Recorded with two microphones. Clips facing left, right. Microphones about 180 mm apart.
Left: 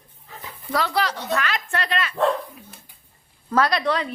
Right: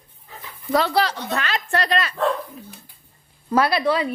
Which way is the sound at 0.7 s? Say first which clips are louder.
Right 4 dB; 30° right (ahead or behind).